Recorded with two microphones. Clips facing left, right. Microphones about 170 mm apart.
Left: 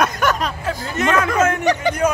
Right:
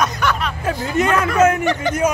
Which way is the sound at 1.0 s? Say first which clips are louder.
Right 2 dB; 10° right (ahead or behind).